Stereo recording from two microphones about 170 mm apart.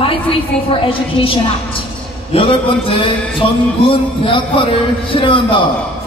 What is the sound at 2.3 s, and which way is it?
Speech, 35° left (ahead or behind).